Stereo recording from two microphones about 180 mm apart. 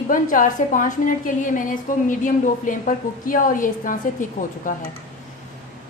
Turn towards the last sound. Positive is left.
turn(degrees=45)  # may be behind; listen again after turning